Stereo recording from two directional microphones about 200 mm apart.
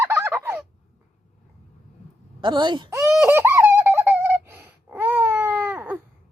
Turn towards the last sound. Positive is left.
turn(degrees=-10)  # may be behind; listen again after turning